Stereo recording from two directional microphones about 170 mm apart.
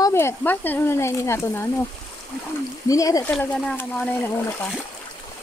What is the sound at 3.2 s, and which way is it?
Speech, 5° left (ahead or behind).